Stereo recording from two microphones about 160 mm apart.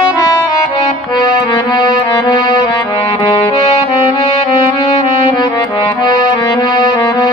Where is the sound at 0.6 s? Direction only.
25° left (ahead or behind).